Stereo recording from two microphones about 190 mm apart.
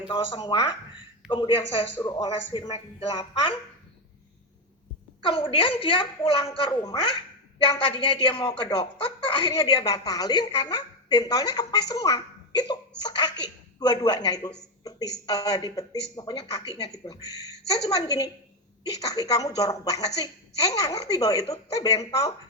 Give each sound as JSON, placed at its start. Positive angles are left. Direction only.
{"t": 0.1, "sound": "speech", "side_deg": 25}
{"t": 5.2, "sound": "speech", "side_deg": 25}